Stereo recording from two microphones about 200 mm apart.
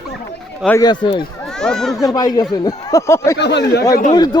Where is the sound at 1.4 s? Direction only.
5° left (ahead or behind).